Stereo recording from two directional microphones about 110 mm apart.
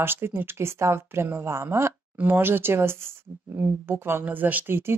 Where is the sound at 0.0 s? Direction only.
20° right (ahead or behind).